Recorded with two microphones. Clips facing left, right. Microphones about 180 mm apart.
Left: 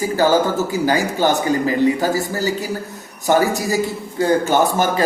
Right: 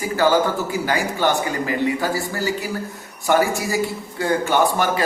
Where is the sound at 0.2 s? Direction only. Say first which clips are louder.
Left 1 dB; 40° left (ahead or behind).